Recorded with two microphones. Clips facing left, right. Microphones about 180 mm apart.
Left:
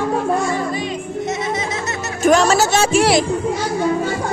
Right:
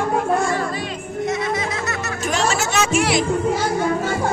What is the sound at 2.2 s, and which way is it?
Music, 45° left (ahead or behind).